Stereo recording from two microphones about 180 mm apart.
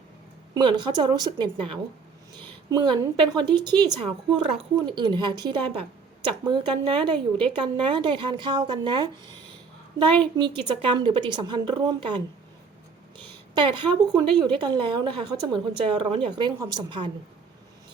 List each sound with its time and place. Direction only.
0.5 s speech: 25° right (ahead or behind)
10.2 s a woman's voice: 25° right (ahead or behind)